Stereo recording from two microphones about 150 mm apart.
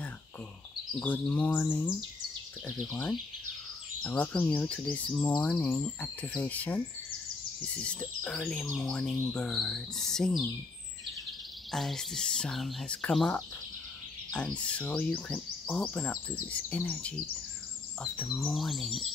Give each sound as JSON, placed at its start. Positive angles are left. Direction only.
{"t": 0.9, "sound": "speech", "side_deg": 5}
{"t": 11.7, "sound": "speech", "side_deg": 0}
{"t": 18.2, "sound": "speech", "side_deg": 0}